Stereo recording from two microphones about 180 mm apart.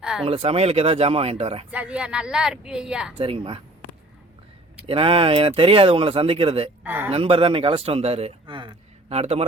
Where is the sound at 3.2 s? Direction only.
30° right (ahead or behind).